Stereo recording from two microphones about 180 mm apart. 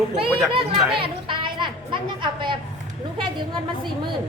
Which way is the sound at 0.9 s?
30° right (ahead or behind).